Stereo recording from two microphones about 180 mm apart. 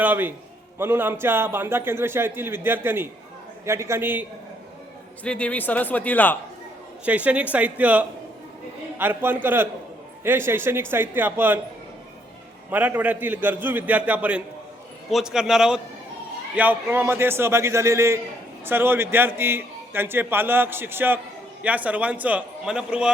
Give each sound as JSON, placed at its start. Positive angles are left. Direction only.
{"t": 0.0, "sound": "a man's voice", "side_deg": -10}
{"t": 5.2, "sound": "speech", "side_deg": 5}
{"t": 7.0, "sound": "a man's voice", "side_deg": -5}
{"t": 12.7, "sound": "a man's voice", "side_deg": -10}